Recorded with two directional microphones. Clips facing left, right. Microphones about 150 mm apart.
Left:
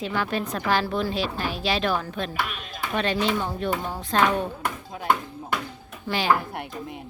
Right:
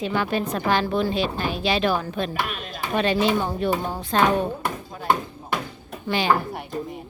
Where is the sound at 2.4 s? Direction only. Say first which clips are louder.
Right 4 dB; 45° right (ahead or behind).